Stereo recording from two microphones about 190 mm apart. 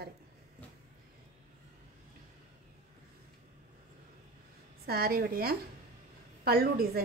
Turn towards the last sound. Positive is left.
turn(degrees=-55)  # may be behind; listen again after turning